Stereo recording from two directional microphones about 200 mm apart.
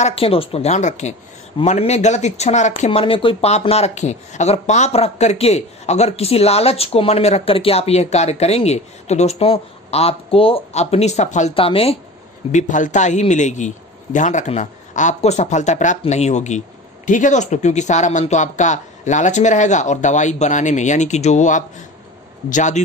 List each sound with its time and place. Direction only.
0.0 s speech: 30° left (ahead or behind)